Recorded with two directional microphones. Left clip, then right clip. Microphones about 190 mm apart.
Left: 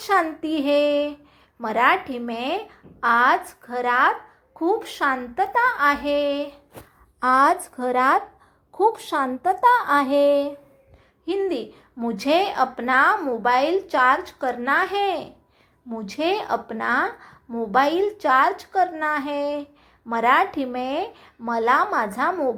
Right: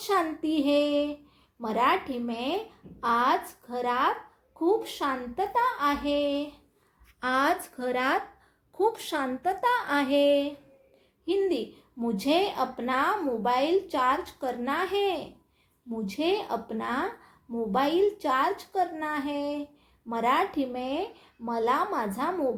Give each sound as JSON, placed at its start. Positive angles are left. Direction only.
{"t": 0.0, "sound": "a woman's voice", "side_deg": 15}